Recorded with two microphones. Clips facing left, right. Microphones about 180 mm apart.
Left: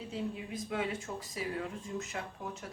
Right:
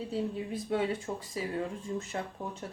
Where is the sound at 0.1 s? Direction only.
35° right (ahead or behind).